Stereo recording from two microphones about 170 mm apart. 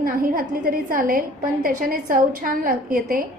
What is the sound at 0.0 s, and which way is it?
A woman's voice, 55° right (ahead or behind).